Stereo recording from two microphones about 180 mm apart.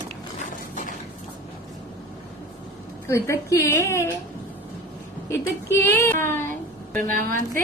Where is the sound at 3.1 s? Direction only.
15° left (ahead or behind).